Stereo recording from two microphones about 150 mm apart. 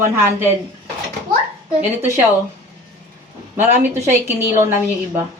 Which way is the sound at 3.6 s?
15° right (ahead or behind).